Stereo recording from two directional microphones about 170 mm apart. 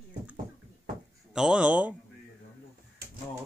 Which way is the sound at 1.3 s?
5° right (ahead or behind).